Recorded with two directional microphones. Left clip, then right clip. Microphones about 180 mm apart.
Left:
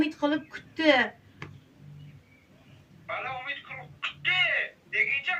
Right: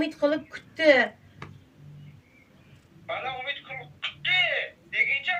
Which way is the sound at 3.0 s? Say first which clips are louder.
Right 2 dB; 30° right (ahead or behind).